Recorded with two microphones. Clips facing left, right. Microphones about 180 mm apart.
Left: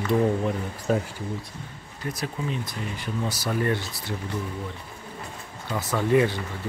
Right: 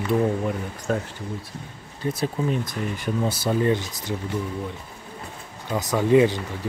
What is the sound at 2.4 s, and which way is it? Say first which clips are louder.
Speech: right 5 dB; 45° right (ahead or behind).